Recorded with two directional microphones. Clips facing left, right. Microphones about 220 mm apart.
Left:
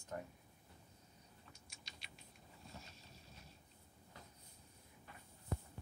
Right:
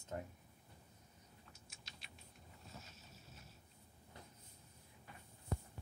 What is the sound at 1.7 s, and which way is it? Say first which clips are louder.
Typing: even; centre (ahead or behind).